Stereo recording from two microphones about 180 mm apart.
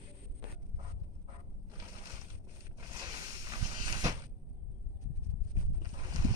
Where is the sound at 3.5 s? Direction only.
20° right (ahead or behind).